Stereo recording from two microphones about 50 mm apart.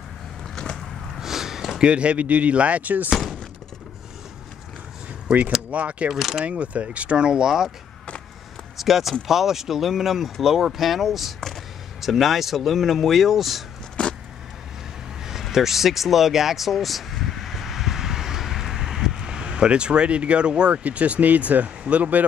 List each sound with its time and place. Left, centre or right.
0.6 s a sound: centre
1.2 s a sound: centre
1.9 s speech: right
3.1 s a sound: centre
5.3 s speech: right
6.1 s speech: centre
6.4 s speech: right; by 7.7 s centre
8.7 s speech: centre
14.0 s vehicle: left
15.5 s speech: centre; by 22.2 s right